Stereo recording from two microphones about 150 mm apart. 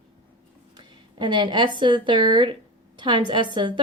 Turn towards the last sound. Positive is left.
turn(degrees=-30)  # may be behind; listen again after turning